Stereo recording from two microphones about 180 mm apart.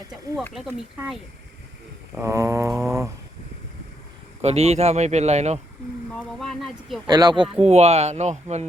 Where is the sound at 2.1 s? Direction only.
15° right (ahead or behind).